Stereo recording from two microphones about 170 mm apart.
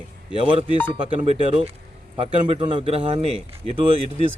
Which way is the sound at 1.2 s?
35° right (ahead or behind).